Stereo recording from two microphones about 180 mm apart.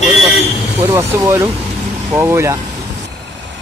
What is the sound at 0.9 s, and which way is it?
Speech, 15° right (ahead or behind).